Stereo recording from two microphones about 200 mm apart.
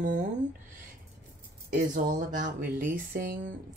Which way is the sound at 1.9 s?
40° right (ahead or behind).